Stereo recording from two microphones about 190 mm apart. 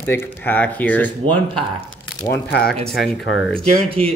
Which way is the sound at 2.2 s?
15° left (ahead or behind).